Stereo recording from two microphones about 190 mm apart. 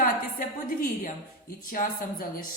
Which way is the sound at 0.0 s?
45° left (ahead or behind).